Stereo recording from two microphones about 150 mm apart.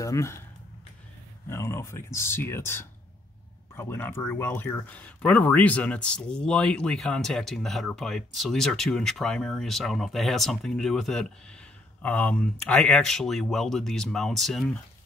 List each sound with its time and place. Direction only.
0.0 s speech: 20° left (ahead or behind)
1.5 s speech: 15° left (ahead or behind); by 14.7 s centre (ahead or behind)